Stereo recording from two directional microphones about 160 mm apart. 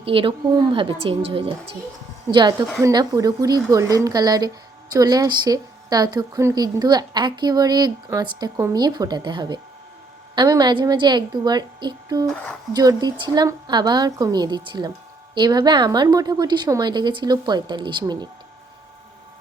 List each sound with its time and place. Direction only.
0.0 s a woman's voice: 35° right (ahead or behind)
12.3 s speech: 10° left (ahead or behind)
12.7 s speech: 25° right (ahead or behind)